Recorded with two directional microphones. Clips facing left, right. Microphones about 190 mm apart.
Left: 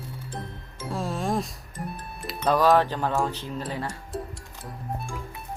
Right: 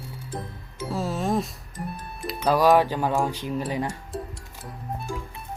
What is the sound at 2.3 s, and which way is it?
Speech, 10° right (ahead or behind).